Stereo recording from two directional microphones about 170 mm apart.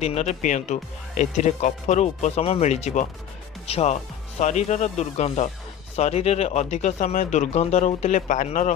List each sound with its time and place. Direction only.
0.0 s speech: 40° left (ahead or behind)